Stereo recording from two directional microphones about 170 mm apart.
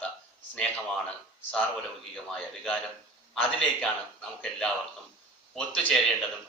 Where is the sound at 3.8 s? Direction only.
5° left (ahead or behind).